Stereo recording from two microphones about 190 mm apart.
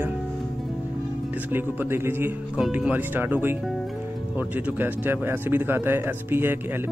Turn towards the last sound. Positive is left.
turn(degrees=-10)  # may be behind; listen again after turning